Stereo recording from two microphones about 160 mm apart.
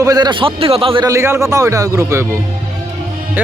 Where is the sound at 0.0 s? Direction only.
25° right (ahead or behind).